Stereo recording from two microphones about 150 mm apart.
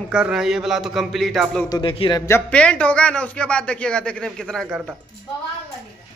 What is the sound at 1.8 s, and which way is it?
Speech, 35° left (ahead or behind).